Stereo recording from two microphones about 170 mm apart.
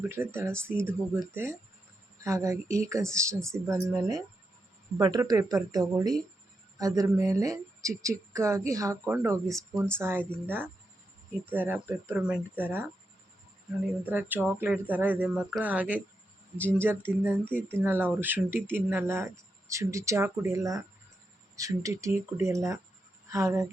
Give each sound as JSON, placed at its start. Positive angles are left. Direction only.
{"t": 0.1, "sound": "speech", "side_deg": -15}
{"t": 14.0, "sound": "speech", "side_deg": -10}
{"t": 17.4, "sound": "speech", "side_deg": 10}
{"t": 17.7, "sound": "speech", "side_deg": -15}